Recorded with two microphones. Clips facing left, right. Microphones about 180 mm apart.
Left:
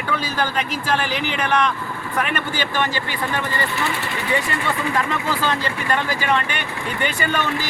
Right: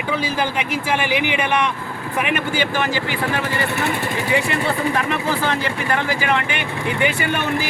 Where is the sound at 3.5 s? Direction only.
65° right (ahead or behind).